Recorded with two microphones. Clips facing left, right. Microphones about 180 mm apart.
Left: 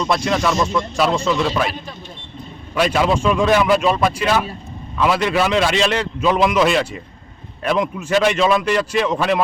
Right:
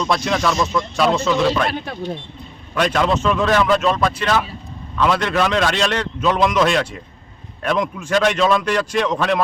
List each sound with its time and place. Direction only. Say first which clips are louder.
0.0 s a man's voice: left 1 dB; centre (ahead or behind)
2.7 s a man's voice: left 1 dB; 5° left (ahead or behind)